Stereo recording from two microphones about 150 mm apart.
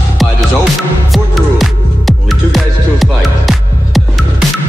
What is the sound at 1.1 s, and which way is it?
Music, centre (ahead or behind).